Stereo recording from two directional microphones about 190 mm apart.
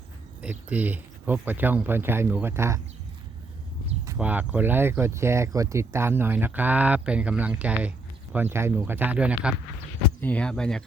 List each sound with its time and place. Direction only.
0.4 s speech: 10° right (ahead or behind)
4.2 s speech: 5° right (ahead or behind)
10.2 s speech: 5° left (ahead or behind)